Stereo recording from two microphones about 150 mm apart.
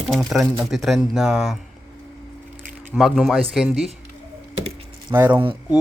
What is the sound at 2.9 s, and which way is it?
Speech, centre (ahead or behind).